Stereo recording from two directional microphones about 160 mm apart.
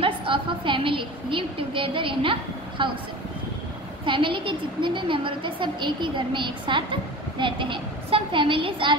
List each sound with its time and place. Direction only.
0.0 s a woman's voice: 35° right (ahead or behind)
4.0 s a woman's voice: 30° right (ahead or behind)